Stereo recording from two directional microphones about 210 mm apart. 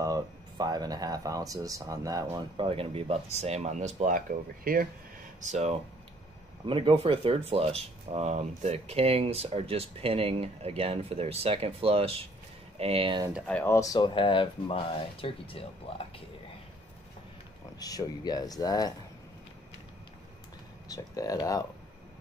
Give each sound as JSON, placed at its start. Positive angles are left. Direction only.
{"t": 0.0, "sound": "speech", "side_deg": -15}
{"t": 6.6, "sound": "speech", "side_deg": -20}
{"t": 13.5, "sound": "speech", "side_deg": 10}
{"t": 17.7, "sound": "speech", "side_deg": 20}
{"t": 20.9, "sound": "speech", "side_deg": 15}